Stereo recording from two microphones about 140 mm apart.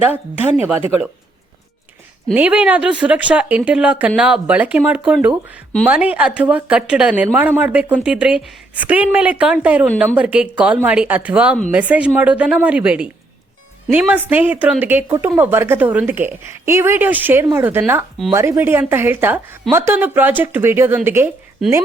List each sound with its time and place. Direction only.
0.1 s a woman's voice: 10° right (ahead or behind)
2.3 s a woman's voice: 10° right (ahead or behind)
14.3 s a woman's voice: 15° right (ahead or behind)